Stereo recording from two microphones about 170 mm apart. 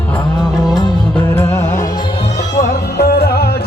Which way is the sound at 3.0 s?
70° left (ahead or behind).